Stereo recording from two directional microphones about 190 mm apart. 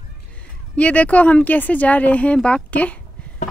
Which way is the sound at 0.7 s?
5° left (ahead or behind).